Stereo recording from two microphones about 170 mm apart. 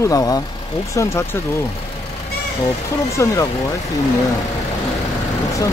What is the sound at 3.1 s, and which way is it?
Speech, 20° left (ahead or behind).